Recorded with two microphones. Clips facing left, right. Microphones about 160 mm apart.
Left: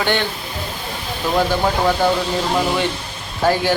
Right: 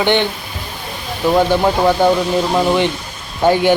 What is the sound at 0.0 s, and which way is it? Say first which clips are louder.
Speech: right 5 dB; 20° right (ahead or behind).